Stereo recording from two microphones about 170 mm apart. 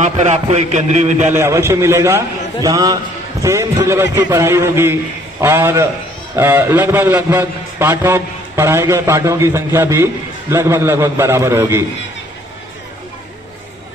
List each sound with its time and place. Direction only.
0.0 s a man's voice: 45° right (ahead or behind)
1.3 s a man's voice: 15° right (ahead or behind)